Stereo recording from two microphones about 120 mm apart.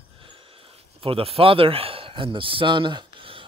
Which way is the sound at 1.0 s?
50° right (ahead or behind).